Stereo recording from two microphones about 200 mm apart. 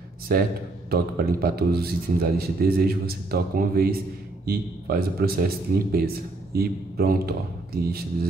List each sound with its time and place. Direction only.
0.3 s a man's voice: 50° right (ahead or behind)